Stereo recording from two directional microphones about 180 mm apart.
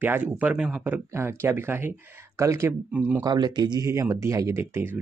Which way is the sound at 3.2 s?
25° right (ahead or behind).